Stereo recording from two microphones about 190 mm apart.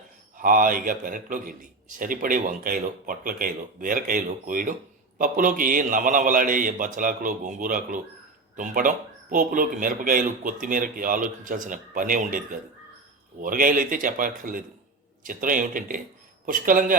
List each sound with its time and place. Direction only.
0.3 s speech: 45° right (ahead or behind)
13.4 s speech: 45° right (ahead or behind)